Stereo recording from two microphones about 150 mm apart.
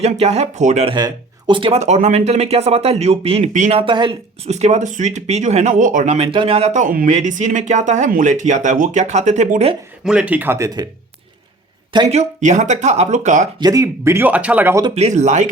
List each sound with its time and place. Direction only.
0.0 s speech: 45° right (ahead or behind)
0.9 s speech: 30° right (ahead or behind); by 3.8 s 50° right (ahead or behind)
3.8 s speech: 30° right (ahead or behind)
4.4 s speech: 50° right (ahead or behind)
6.2 s speech: 35° right (ahead or behind)
10.0 s speech: 5° right (ahead or behind)
12.0 s speech: 50° right (ahead or behind)
13.6 s speech: 25° right (ahead or behind)
14.9 s speech: 50° right (ahead or behind)